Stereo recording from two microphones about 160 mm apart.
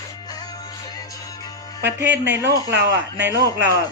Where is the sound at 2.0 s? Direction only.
90° right.